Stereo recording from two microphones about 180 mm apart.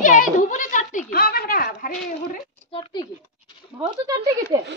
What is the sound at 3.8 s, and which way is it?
Speech, 20° right (ahead or behind).